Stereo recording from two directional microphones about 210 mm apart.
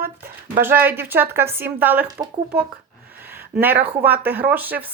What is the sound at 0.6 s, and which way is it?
A woman's voice, 10° right (ahead or behind).